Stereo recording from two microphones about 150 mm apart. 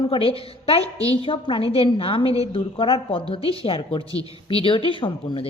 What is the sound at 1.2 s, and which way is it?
A woman's voice, 35° left (ahead or behind).